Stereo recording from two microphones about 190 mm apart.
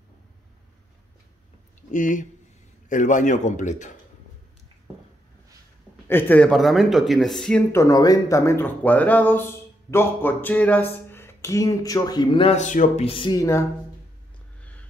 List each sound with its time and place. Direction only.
1.8 s a man's voice: 45° left (ahead or behind)
6.0 s speech: 10° left (ahead or behind)
7.7 s speech: 15° left (ahead or behind)